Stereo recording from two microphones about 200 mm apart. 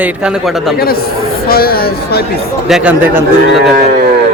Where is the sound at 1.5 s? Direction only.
50° left (ahead or behind).